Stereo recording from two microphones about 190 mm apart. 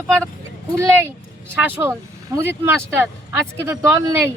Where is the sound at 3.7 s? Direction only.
15° right (ahead or behind).